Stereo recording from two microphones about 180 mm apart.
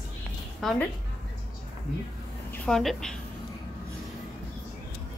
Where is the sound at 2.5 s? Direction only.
5° left (ahead or behind).